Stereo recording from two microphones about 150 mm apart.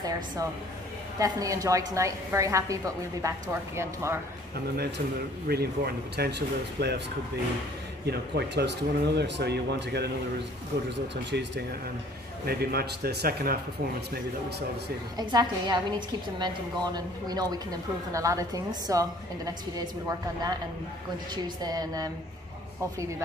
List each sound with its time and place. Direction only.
1.2 s a woman's voice: 20° right (ahead or behind)
5.5 s speech: 90° right
8.0 s speech: 90° right
11.3 s speech: 90° right
15.1 s a woman's voice: 25° right (ahead or behind)
21.6 s a woman's voice: 25° right (ahead or behind)